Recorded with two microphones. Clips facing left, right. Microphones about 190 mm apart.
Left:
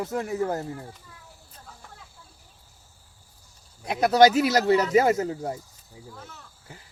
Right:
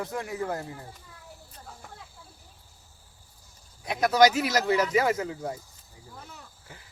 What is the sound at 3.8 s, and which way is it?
Speech, 35° left (ahead or behind).